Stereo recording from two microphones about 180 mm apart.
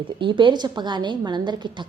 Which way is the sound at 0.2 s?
25° right (ahead or behind).